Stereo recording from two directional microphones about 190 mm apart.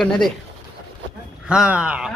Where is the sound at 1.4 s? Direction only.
5° right (ahead or behind).